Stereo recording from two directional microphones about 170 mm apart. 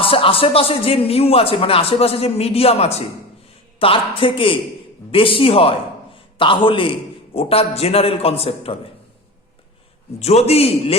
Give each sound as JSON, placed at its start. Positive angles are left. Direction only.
{"t": 0.0, "sound": "a man's voice", "side_deg": 30}
{"t": 10.2, "sound": "speech", "side_deg": 40}